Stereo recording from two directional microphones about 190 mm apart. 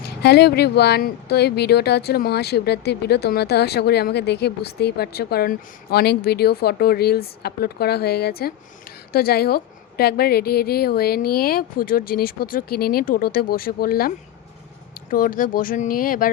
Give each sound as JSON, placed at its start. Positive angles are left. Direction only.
{"t": 0.2, "sound": "a woman's voice", "side_deg": 60}
{"t": 15.1, "sound": "a woman's voice", "side_deg": 45}